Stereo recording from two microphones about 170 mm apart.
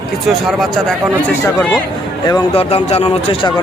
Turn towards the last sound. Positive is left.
turn(degrees=35)  # may be behind; listen again after turning